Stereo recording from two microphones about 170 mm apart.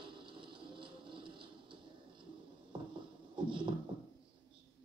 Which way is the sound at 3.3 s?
30° right (ahead or behind).